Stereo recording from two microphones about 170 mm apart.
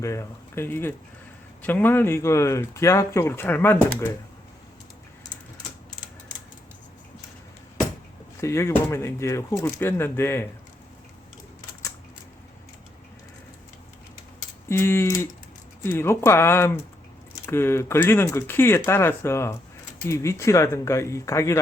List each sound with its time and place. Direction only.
0.0 s speech: 15° left (ahead or behind)
8.4 s speech: 15° left (ahead or behind)
14.7 s speech: 15° left (ahead or behind)